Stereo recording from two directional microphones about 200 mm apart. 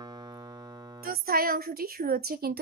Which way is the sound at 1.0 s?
45° right (ahead or behind).